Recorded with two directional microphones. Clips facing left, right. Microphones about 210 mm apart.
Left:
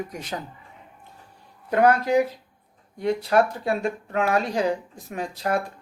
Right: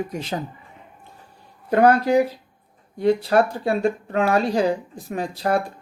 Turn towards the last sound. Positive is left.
turn(degrees=-35)  # may be behind; listen again after turning